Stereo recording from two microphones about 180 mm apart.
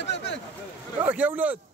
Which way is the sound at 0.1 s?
75° left (ahead or behind).